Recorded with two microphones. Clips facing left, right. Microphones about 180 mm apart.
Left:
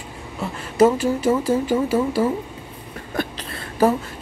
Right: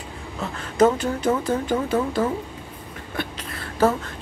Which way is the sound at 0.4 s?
5° left (ahead or behind).